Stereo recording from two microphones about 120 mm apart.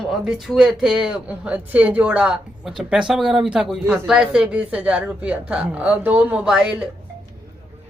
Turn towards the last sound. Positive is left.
turn(degrees=-10)  # may be behind; listen again after turning